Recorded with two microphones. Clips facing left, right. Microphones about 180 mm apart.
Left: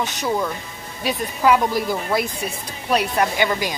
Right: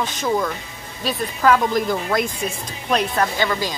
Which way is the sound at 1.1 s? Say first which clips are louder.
Even; 10° left (ahead or behind).